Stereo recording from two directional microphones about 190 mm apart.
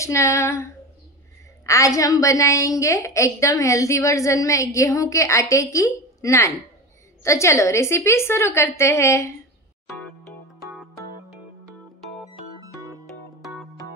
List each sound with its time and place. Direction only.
0.0 s a woman's voice: 15° left (ahead or behind)
1.7 s a woman's voice: 15° left (ahead or behind)